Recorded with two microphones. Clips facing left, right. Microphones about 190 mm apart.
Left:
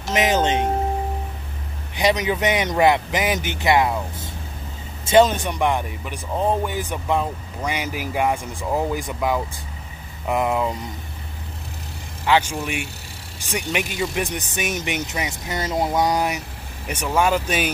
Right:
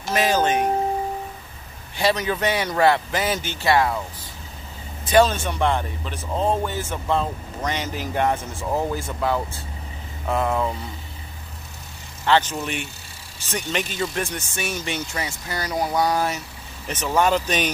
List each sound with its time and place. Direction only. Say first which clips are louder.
0.1 s music: left 1 dB; 20° left (ahead or behind)
2.0 s speech: left 2 dB; 15° left (ahead or behind)
5.0 s speech: left 2 dB; 20° left (ahead or behind)
12.3 s speech: even; 10° left (ahead or behind)